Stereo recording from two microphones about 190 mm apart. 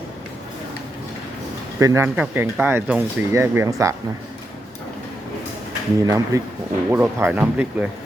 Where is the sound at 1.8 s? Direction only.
15° right (ahead or behind).